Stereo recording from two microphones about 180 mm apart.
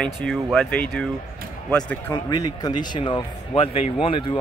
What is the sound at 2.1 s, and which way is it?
Speech, 20° left (ahead or behind).